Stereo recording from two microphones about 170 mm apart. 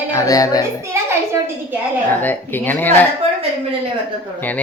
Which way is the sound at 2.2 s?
10° left (ahead or behind).